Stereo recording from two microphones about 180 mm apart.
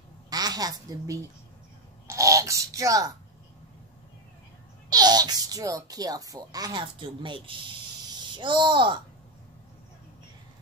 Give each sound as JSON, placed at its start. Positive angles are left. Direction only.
{"t": 0.3, "sound": "speech", "side_deg": -20}
{"t": 4.8, "sound": "speech", "side_deg": -20}